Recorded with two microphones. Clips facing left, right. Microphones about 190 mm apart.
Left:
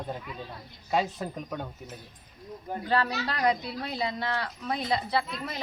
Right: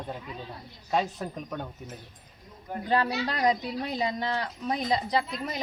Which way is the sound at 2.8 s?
25° right (ahead or behind).